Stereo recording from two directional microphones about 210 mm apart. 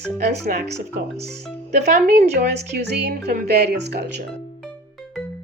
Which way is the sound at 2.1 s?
50° right (ahead or behind).